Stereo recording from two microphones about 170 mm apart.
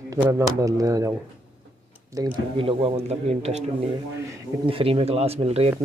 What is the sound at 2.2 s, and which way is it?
Speech, 20° right (ahead or behind).